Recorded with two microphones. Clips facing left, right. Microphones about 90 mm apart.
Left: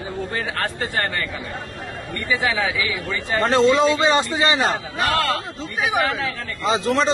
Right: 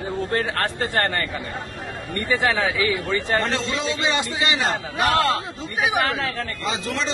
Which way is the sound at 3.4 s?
40° left (ahead or behind).